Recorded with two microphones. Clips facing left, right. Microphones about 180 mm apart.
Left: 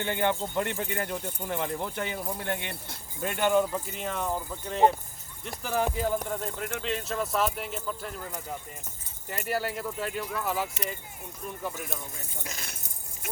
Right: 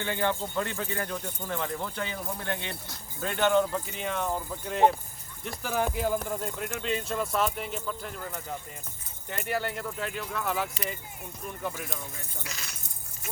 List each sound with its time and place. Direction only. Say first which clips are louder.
0.0 s speech: left 1 dB; 20° left (ahead or behind); by 11.9 s centre (ahead or behind)
12.4 s speech: left 3 dB; 50° left (ahead or behind)